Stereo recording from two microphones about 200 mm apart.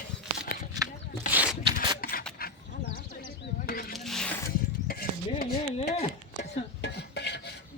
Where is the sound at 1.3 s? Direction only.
10° right (ahead or behind).